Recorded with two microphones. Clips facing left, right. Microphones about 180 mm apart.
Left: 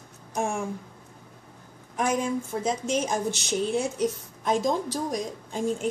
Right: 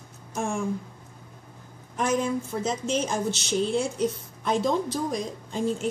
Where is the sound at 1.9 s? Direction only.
10° left (ahead or behind).